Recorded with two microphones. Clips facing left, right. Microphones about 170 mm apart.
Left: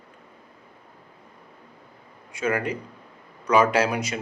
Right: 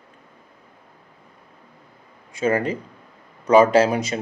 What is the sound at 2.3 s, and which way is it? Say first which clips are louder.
Speech: right 4 dB; 30° right (ahead or behind).